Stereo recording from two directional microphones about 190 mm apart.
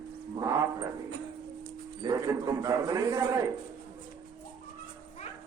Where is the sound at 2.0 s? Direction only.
15° right (ahead or behind).